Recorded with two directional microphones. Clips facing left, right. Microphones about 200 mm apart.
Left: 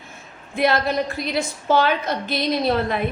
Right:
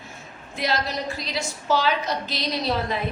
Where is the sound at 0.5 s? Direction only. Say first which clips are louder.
Left 7 dB; 55° left (ahead or behind).